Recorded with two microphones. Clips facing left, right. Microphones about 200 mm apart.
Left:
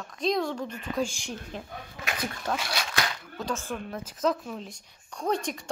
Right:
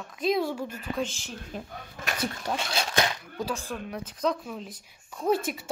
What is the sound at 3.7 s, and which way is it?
Speech, 15° right (ahead or behind).